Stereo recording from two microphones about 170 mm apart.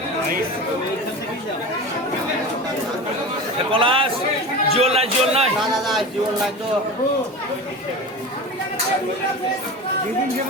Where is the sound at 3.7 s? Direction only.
30° right (ahead or behind).